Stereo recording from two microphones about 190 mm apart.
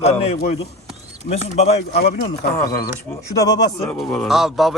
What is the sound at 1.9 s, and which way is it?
Speech, 55° left (ahead or behind).